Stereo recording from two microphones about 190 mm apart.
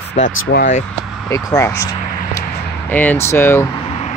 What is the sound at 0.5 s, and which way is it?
Speech, 60° left (ahead or behind).